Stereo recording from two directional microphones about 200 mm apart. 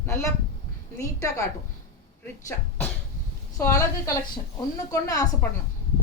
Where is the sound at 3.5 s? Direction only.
15° left (ahead or behind).